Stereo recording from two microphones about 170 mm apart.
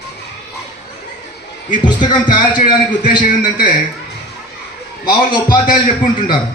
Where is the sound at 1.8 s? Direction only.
25° left (ahead or behind).